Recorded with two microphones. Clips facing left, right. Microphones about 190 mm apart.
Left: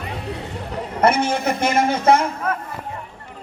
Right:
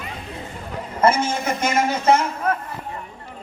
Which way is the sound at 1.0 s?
65° left (ahead or behind).